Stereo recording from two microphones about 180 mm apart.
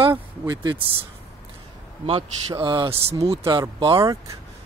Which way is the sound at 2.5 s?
25° right (ahead or behind).